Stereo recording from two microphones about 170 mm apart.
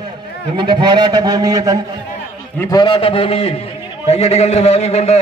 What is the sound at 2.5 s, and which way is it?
A man's voice, 20° left (ahead or behind).